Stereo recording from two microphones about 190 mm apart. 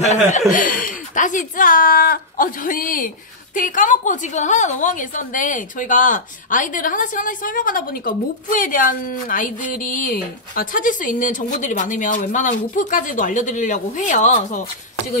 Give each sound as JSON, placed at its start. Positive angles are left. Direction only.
{"t": 0.5, "sound": "a woman's voice", "side_deg": 45}